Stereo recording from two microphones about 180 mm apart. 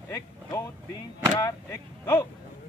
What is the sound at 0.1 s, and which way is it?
Speech, 20° left (ahead or behind).